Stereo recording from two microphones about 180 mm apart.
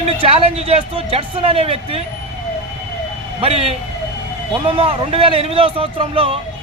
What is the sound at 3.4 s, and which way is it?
Speech, 35° right (ahead or behind).